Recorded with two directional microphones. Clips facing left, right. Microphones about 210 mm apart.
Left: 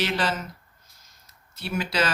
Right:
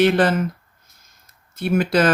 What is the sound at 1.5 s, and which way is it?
Speech, 50° right (ahead or behind).